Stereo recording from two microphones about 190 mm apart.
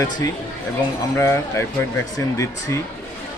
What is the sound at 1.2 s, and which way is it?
Speech, 15° left (ahead or behind).